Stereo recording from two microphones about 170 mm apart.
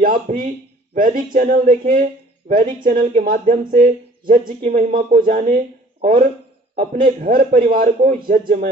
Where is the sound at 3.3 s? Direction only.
50° right (ahead or behind).